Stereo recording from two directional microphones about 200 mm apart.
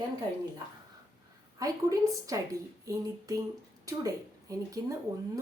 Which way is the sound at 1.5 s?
15° right (ahead or behind).